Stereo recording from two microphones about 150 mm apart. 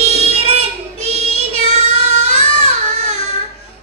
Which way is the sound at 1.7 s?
45° right (ahead or behind).